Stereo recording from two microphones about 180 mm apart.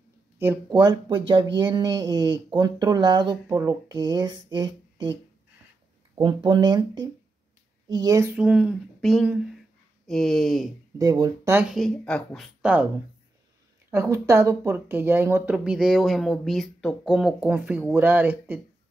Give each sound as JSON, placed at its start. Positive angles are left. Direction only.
{"t": 0.4, "sound": "speech", "side_deg": -20}
{"t": 6.1, "sound": "speech", "side_deg": -25}
{"t": 8.4, "sound": "speech", "side_deg": -5}
{"t": 11.0, "sound": "speech", "side_deg": -20}
{"t": 11.5, "sound": "speech", "side_deg": 0}
{"t": 13.8, "sound": "speech", "side_deg": -15}